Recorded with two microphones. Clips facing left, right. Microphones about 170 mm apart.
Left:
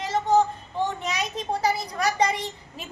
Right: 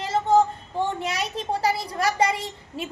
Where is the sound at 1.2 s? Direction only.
30° right (ahead or behind).